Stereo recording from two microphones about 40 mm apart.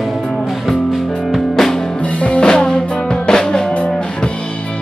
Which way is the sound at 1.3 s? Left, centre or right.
Centre.